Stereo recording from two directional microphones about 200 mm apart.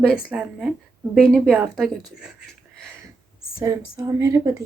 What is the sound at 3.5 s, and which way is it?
A woman's voice, 20° right (ahead or behind).